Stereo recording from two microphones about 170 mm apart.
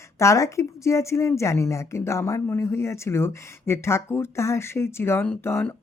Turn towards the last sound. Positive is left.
turn(degrees=15)  # may be behind; listen again after turning